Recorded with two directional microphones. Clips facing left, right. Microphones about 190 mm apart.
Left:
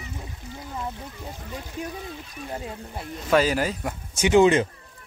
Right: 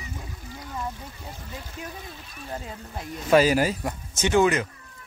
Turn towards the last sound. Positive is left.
turn(degrees=25)  # may be behind; listen again after turning